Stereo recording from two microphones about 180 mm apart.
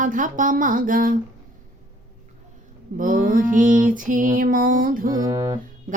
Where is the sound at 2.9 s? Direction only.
50° right (ahead or behind).